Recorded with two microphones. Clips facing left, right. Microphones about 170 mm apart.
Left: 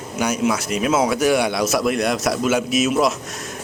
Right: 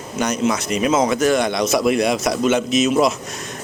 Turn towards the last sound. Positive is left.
turn(degrees=5)  # may be behind; listen again after turning